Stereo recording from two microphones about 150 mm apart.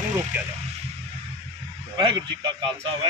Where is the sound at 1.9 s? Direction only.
30° right (ahead or behind).